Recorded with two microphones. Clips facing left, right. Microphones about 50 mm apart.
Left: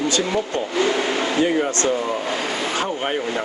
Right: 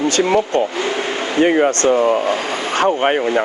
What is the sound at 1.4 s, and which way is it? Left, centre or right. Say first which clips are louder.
Speech: right 9 dB; right.